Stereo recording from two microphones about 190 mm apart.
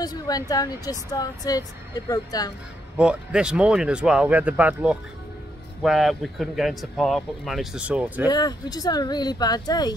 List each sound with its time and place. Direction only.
0.0 s speech: 20° left (ahead or behind)
3.0 s speech: 5° right (ahead or behind)
8.3 s speech: 20° left (ahead or behind)